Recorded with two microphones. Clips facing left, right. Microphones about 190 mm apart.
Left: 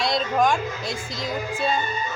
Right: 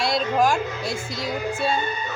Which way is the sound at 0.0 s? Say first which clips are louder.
Right 1 dB; 5° right (ahead or behind).